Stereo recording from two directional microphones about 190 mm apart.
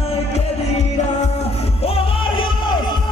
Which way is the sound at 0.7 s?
35° left (ahead or behind).